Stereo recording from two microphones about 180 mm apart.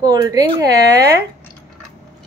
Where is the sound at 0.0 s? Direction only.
20° right (ahead or behind).